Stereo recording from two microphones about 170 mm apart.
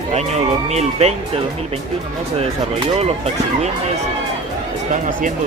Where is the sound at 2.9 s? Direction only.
40° right (ahead or behind).